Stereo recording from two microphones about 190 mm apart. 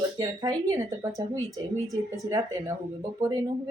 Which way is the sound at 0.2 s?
20° right (ahead or behind).